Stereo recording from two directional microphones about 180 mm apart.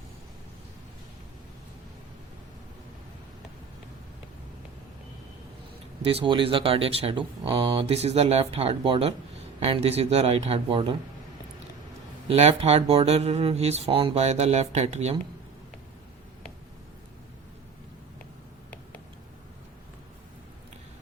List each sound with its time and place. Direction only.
6.0 s speech: 35° right (ahead or behind)
12.3 s speech: 35° right (ahead or behind)